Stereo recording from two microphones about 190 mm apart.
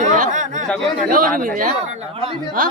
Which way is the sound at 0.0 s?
40° right (ahead or behind).